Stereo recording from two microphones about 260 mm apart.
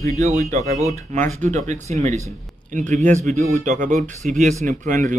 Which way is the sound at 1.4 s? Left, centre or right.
Right.